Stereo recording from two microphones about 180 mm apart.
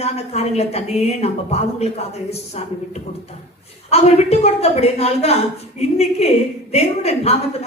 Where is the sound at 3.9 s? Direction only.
35° left (ahead or behind).